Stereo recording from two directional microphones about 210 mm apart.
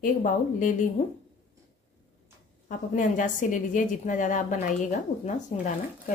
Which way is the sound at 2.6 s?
40° left (ahead or behind).